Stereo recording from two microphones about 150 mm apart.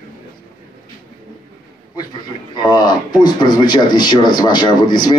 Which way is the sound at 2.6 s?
30° left (ahead or behind).